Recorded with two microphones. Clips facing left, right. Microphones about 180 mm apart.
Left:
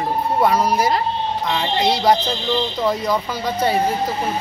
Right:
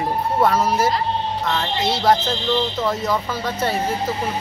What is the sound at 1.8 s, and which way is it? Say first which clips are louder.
Speech: left 1 dB; 15° left (ahead or behind).